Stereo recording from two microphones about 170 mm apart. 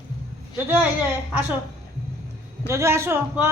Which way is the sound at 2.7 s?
15° right (ahead or behind).